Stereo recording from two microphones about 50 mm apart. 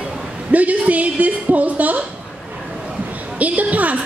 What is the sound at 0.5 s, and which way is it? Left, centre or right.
A woman's voice, right.